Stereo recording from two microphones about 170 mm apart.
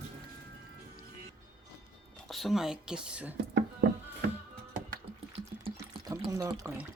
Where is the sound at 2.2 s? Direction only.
Centre (ahead or behind).